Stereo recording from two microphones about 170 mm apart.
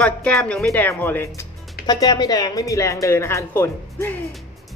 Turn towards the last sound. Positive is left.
turn(degrees=10)  # may be behind; listen again after turning